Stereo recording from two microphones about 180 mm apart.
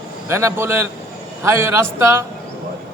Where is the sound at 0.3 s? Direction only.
15° right (ahead or behind).